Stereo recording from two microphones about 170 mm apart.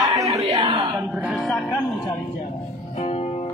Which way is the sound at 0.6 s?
25° right (ahead or behind).